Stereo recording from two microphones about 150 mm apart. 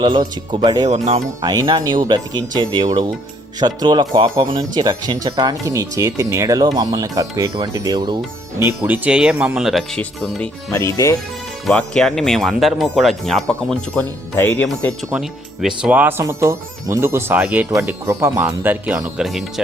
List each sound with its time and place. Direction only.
0.0 s speech: 30° right (ahead or behind)
0.9 s speech: 45° right (ahead or behind)
1.4 s speech: 25° right (ahead or behind)
8.5 s speech: 15° right (ahead or behind); by 10.5 s 5° left (ahead or behind)
10.7 s speech: 15° left (ahead or behind)
11.6 s speech: 5° left (ahead or behind)
15.1 s speech: 5° right (ahead or behind)